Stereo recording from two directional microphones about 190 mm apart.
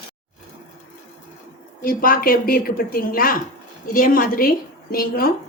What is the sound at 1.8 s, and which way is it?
A woman's voice, 50° left (ahead or behind).